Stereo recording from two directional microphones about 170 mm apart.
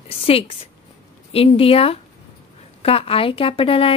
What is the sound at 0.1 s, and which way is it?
A woman's voice, 35° left (ahead or behind).